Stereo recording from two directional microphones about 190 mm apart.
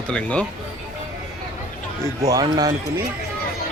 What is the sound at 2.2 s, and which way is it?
Speech, 20° right (ahead or behind).